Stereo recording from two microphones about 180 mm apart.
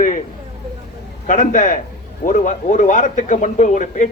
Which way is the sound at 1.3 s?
45° left (ahead or behind).